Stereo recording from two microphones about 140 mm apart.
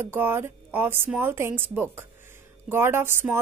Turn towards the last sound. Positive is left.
turn(degrees=-15)  # may be behind; listen again after turning